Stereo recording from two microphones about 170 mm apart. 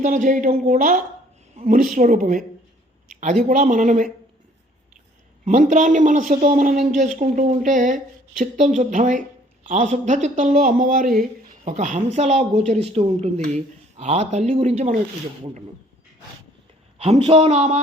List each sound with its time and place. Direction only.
0.0 s speech: 50° right (ahead or behind)
3.5 s speech: 50° right (ahead or behind)
5.5 s speech: 45° right (ahead or behind)
17.0 s speech: 35° right (ahead or behind)